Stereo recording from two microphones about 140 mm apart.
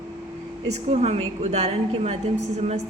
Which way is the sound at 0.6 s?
50° right (ahead or behind).